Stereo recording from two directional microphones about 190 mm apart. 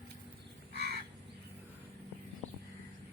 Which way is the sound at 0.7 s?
60° right (ahead or behind).